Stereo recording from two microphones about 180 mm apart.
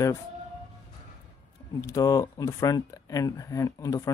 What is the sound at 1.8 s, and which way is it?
Speech, 20° left (ahead or behind).